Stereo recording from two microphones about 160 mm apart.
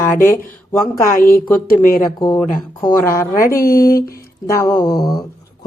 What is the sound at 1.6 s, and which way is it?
Speech, 60° left (ahead or behind).